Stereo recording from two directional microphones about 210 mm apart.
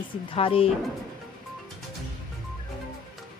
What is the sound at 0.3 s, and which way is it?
Speech, 25° left (ahead or behind).